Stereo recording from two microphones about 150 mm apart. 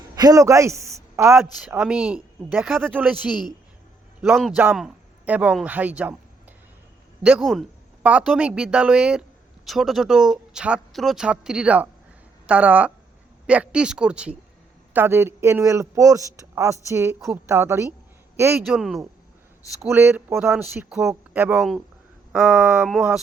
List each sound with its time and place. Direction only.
0.2 s a man's voice: 25° right (ahead or behind)
1.7 s speech: 5° right (ahead or behind)
2.9 s a woman's voice: 10° right (ahead or behind)
7.2 s a man's voice: 10° right (ahead or behind)
7.4 s speech: 5° left (ahead or behind)
8.0 s a woman's voice: 10° right (ahead or behind)
18.6 s speech: centre (ahead or behind)
19.9 s a woman's voice: 15° right (ahead or behind)
20.9 s speech: 5° right (ahead or behind)